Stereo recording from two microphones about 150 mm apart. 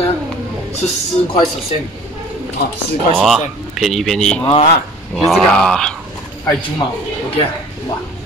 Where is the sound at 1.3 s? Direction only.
35° left (ahead or behind).